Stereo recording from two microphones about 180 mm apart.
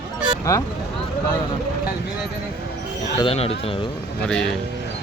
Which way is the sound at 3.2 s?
30° left (ahead or behind).